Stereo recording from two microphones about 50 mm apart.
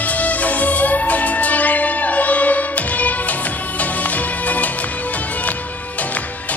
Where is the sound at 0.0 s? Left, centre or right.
Left.